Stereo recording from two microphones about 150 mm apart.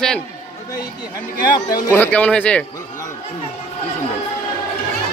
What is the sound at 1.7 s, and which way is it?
Speech, 15° left (ahead or behind).